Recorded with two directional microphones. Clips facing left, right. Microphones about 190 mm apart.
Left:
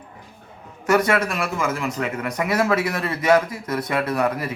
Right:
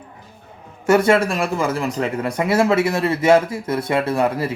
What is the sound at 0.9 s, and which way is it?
Speech, 30° right (ahead or behind).